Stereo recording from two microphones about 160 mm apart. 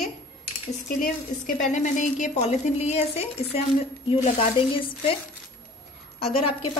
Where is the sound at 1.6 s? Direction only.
50° left (ahead or behind).